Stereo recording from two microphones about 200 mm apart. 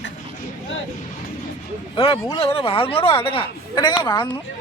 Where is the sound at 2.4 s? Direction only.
30° left (ahead or behind).